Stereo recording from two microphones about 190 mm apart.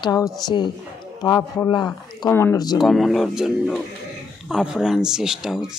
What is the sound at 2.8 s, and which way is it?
Speech, centre (ahead or behind).